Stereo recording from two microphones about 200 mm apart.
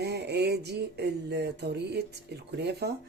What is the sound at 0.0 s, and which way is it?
Speech, 55° right (ahead or behind).